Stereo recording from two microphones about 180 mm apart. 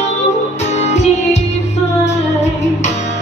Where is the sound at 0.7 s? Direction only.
40° left (ahead or behind).